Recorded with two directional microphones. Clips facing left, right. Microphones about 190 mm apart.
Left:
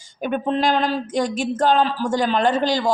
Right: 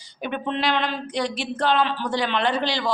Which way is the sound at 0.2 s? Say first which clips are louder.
Left 5 dB; 45° left (ahead or behind).